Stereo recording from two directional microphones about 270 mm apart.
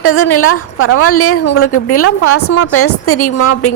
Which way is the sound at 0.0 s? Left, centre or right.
Left.